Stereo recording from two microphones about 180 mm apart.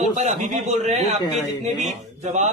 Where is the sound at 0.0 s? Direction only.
40° right (ahead or behind).